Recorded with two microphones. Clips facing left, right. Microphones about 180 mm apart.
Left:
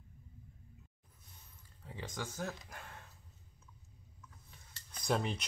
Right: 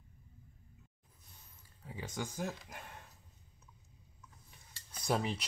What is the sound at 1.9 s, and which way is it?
Speech, 10° right (ahead or behind).